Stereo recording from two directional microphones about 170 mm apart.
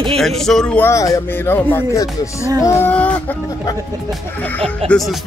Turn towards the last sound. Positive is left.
turn(degrees=5)  # may be behind; listen again after turning